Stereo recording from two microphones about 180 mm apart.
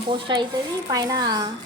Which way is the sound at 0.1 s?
25° right (ahead or behind).